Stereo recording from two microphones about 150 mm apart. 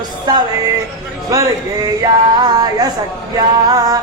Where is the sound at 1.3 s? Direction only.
25° right (ahead or behind).